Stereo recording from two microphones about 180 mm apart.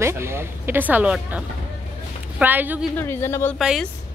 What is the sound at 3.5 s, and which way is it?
Speech, centre (ahead or behind).